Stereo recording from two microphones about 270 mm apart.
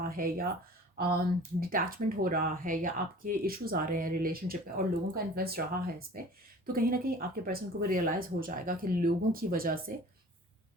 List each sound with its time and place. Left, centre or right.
0.0 s speech: right